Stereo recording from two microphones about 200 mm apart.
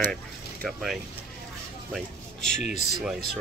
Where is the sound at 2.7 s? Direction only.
5° right (ahead or behind).